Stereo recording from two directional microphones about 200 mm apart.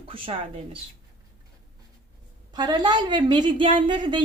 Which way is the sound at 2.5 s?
20° right (ahead or behind).